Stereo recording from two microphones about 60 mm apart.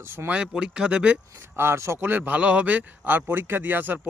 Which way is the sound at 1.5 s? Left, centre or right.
Right.